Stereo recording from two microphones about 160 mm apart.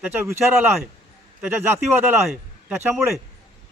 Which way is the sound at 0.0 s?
15° right (ahead or behind).